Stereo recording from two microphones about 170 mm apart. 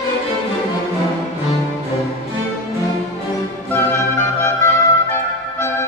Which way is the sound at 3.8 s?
15° left (ahead or behind).